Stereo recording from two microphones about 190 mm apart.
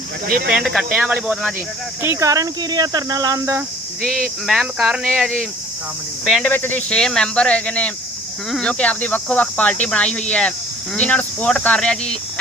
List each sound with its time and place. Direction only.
0.3 s speech: 50° right (ahead or behind)
0.5 s speech: centre (ahead or behind)
4.0 s speech: 5° left (ahead or behind)